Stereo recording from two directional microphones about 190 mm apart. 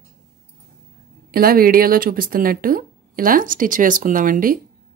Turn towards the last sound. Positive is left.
turn(degrees=-45)  # may be behind; listen again after turning